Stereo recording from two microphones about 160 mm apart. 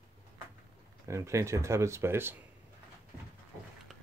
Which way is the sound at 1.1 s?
20° right (ahead or behind).